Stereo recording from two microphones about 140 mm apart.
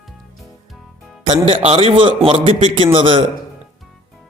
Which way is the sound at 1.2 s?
45° right (ahead or behind).